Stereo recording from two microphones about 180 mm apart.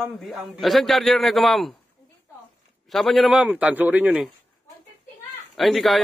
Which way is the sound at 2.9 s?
Centre (ahead or behind).